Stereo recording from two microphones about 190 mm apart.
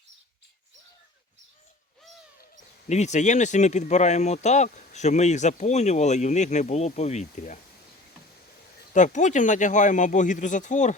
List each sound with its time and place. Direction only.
2.9 s speech: 35° left (ahead or behind)
8.9 s speech: 40° left (ahead or behind)